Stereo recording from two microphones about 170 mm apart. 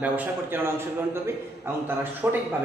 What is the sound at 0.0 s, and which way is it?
A man's voice, 10° right (ahead or behind).